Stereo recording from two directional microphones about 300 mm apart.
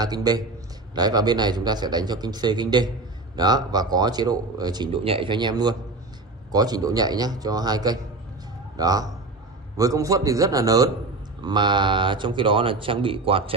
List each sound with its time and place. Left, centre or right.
0.0 s speech: centre